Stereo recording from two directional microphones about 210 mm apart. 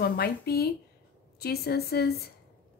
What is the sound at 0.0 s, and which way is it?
Speech, 50° left (ahead or behind).